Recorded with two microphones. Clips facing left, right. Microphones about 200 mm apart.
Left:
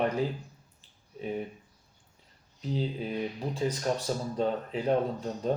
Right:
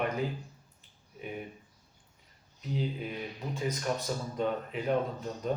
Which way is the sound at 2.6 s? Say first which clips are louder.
Left 3 dB; 30° left (ahead or behind).